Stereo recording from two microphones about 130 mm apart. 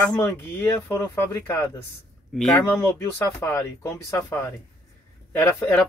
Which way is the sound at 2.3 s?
5° left (ahead or behind).